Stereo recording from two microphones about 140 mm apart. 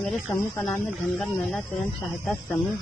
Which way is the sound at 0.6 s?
5° left (ahead or behind).